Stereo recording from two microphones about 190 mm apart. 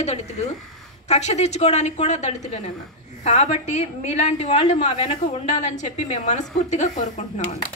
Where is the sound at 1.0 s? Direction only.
35° left (ahead or behind).